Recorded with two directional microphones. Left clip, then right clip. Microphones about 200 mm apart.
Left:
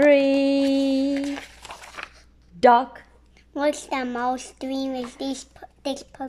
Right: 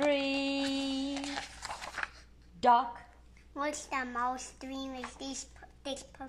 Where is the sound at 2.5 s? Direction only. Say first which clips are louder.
Left 10 dB; 40° left (ahead or behind).